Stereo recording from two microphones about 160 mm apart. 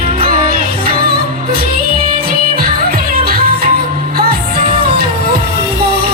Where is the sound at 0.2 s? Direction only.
65° right (ahead or behind).